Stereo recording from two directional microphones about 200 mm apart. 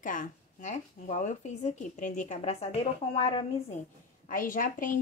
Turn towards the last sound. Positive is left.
turn(degrees=40)  # may be behind; listen again after turning